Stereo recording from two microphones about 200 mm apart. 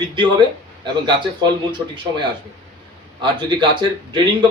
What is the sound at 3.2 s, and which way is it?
A man's voice, 25° right (ahead or behind).